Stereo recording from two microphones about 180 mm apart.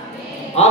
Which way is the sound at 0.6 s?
35° left (ahead or behind).